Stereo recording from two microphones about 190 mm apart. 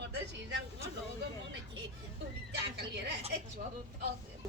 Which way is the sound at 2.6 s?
60° right (ahead or behind).